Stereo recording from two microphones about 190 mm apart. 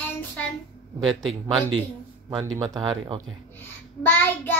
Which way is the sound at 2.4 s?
20° right (ahead or behind).